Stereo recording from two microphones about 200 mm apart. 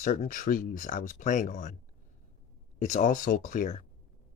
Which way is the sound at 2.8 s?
40° left (ahead or behind).